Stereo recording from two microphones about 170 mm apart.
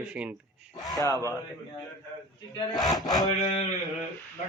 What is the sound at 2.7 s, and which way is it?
Speech, 20° left (ahead or behind).